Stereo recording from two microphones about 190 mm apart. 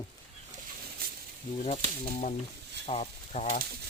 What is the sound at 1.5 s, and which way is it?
Speech, 30° left (ahead or behind).